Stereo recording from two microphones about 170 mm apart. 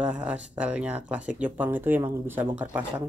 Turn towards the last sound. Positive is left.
turn(degrees=-10)  # may be behind; listen again after turning